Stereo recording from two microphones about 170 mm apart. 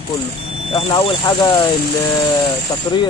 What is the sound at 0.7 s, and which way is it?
Speech, 30° left (ahead or behind).